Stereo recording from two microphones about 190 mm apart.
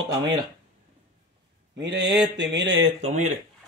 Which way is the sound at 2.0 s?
20° right (ahead or behind).